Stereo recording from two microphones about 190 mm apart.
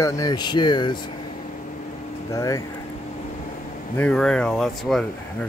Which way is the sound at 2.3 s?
20° left (ahead or behind).